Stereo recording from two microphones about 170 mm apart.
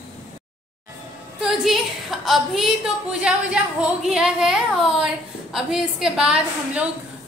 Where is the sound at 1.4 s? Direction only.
Centre (ahead or behind).